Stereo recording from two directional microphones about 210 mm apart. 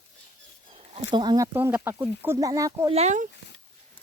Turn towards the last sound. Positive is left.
turn(degrees=-35)  # may be behind; listen again after turning